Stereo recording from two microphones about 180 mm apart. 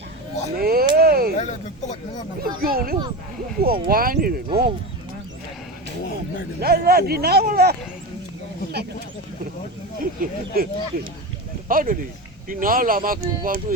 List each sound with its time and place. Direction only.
0.6 s a sound: 55° right (ahead or behind)
1.4 s a sound: 40° left (ahead or behind)
2.4 s speech: 55° right (ahead or behind)
6.6 s speech: 60° right (ahead or behind)
10.0 s speech: 50° right (ahead or behind)
11.7 s speech: 50° right (ahead or behind)